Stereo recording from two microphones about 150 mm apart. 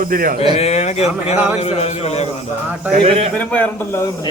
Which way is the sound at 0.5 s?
45° left (ahead or behind).